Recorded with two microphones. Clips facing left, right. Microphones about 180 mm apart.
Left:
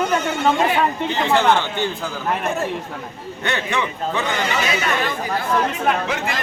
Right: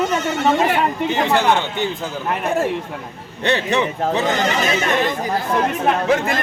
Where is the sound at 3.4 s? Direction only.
30° right (ahead or behind).